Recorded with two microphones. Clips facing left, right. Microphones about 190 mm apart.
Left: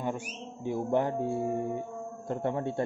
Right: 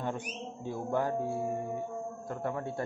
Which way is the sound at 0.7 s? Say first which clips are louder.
Left 4 dB; 20° left (ahead or behind).